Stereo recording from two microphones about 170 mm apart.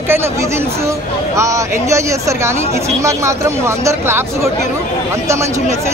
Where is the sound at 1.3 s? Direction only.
20° right (ahead or behind).